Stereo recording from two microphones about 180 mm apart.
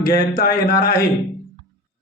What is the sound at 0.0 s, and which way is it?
A man's voice, 60° left (ahead or behind).